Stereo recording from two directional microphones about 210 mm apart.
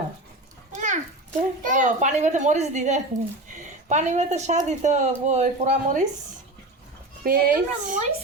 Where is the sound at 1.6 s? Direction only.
35° right (ahead or behind).